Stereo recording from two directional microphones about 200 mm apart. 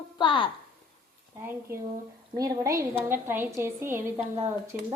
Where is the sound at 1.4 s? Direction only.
10° right (ahead or behind).